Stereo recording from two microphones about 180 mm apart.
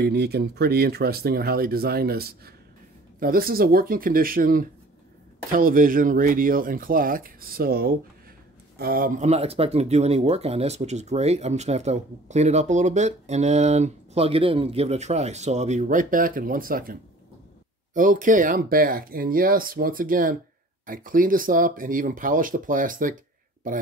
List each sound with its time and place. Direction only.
0.0 s speech: 65° right (ahead or behind); by 23.1 s 50° right (ahead or behind)